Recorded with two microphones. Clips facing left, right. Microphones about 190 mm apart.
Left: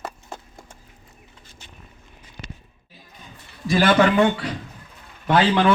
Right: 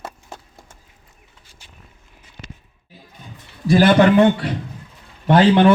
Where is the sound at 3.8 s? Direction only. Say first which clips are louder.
Right 4 dB; 35° right (ahead or behind).